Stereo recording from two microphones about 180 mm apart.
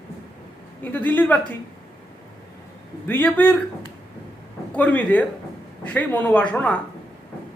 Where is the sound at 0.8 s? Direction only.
10° left (ahead or behind).